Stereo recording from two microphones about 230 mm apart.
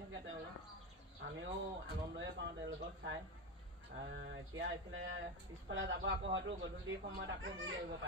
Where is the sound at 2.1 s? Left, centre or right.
Right.